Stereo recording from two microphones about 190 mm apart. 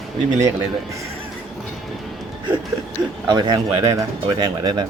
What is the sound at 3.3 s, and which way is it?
Speech, 20° right (ahead or behind).